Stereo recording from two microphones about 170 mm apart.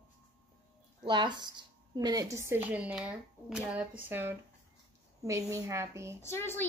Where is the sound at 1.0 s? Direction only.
25° right (ahead or behind).